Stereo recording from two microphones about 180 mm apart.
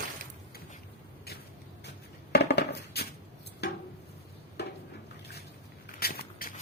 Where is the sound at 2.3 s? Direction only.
65° left (ahead or behind).